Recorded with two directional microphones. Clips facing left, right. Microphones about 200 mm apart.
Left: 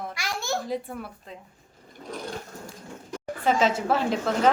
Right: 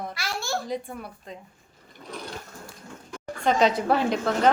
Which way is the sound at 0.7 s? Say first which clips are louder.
Left 1 dB; centre (ahead or behind).